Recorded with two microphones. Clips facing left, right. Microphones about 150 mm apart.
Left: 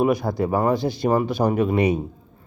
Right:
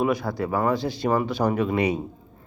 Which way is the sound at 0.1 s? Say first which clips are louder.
Left 4 dB; 15° left (ahead or behind).